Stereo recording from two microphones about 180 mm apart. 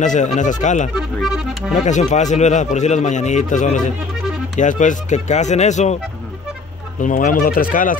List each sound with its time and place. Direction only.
0.0 s speech: 40° left (ahead or behind)
0.9 s speech: centre (ahead or behind)
1.9 s speech: 40° left (ahead or behind)
7.0 s speech: 50° left (ahead or behind)